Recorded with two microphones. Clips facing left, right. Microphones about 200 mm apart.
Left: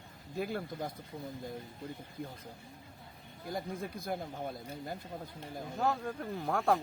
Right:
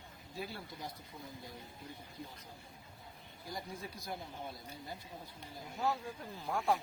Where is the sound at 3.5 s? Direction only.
55° left (ahead or behind).